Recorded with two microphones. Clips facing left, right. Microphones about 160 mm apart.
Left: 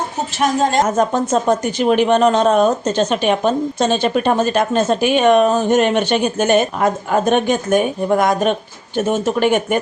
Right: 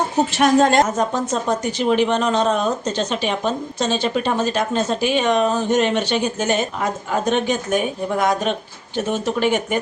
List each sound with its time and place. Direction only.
0.3 s a woman's voice: 65° right (ahead or behind)
0.9 s a woman's voice: 50° left (ahead or behind)